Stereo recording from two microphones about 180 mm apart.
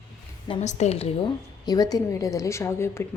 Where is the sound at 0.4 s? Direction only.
35° left (ahead or behind).